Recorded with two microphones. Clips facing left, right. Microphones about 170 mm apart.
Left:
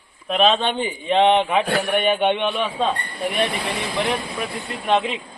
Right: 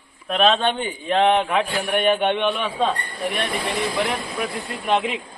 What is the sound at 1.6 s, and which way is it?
Speech, 65° left (ahead or behind).